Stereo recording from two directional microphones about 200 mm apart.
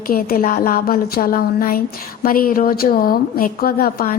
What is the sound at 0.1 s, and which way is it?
A woman's voice, 45° left (ahead or behind).